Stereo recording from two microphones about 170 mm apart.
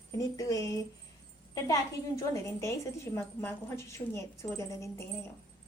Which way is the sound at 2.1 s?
15° left (ahead or behind).